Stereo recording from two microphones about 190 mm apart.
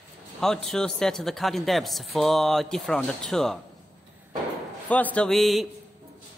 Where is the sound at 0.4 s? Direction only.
Centre (ahead or behind).